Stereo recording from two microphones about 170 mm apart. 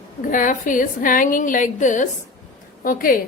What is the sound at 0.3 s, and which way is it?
A woman's voice, 50° left (ahead or behind).